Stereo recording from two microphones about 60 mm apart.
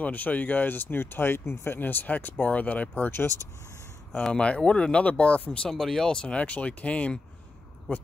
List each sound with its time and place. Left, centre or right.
0.0 s speech: left
4.2 s speech: centre
5.7 s speech: centre
6.2 s speech: left